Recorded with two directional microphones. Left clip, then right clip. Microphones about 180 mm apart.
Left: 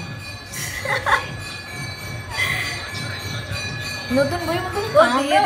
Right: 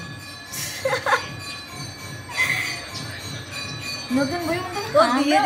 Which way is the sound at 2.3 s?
50° right (ahead or behind).